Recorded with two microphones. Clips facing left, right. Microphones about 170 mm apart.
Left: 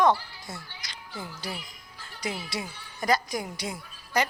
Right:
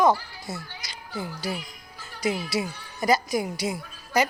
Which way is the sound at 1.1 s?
45° right (ahead or behind).